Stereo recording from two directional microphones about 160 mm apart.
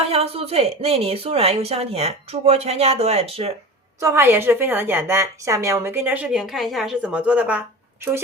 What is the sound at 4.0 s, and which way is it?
A woman's voice, 15° right (ahead or behind).